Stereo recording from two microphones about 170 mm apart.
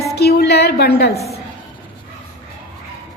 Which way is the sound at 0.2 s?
70° left (ahead or behind).